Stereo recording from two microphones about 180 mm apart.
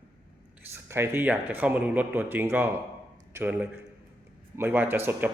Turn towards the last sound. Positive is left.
turn(degrees=-10)  # may be behind; listen again after turning